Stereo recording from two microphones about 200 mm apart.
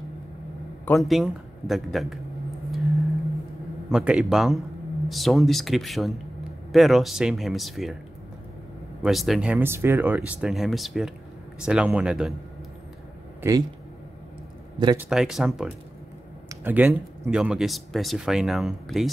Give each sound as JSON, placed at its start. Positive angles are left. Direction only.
{"t": 0.8, "sound": "speech", "side_deg": 0}
{"t": 3.9, "sound": "speech", "side_deg": -5}
{"t": 9.0, "sound": "speech", "side_deg": 0}
{"t": 13.4, "sound": "speech", "side_deg": -15}
{"t": 15.0, "sound": "speech", "side_deg": 0}